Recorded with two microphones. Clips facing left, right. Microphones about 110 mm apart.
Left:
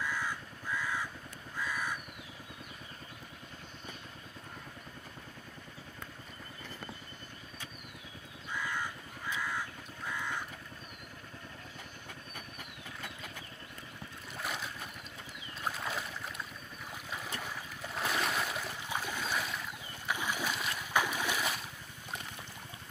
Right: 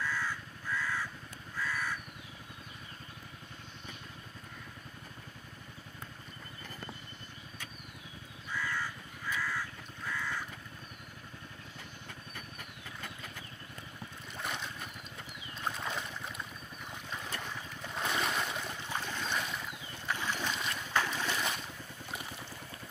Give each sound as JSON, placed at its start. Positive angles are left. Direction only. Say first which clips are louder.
{"t": 0.0, "sound": "crow", "louder": "even", "side_deg": 15}
{"t": 8.5, "sound": "crow", "louder": "even", "side_deg": 15}
{"t": 14.4, "sound": "boat", "louder": "even", "side_deg": 5}
{"t": 15.7, "sound": "boat", "louder": "even", "side_deg": 5}
{"t": 20.1, "sound": "boat", "louder": "even", "side_deg": 10}